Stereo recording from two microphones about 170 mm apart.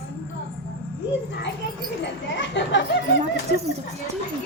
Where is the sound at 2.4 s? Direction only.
90° left.